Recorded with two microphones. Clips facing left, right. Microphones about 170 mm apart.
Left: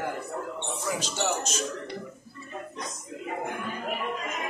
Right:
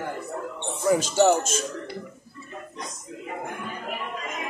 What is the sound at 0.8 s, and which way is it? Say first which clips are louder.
Speech: right 11 dB; 45° right (ahead or behind).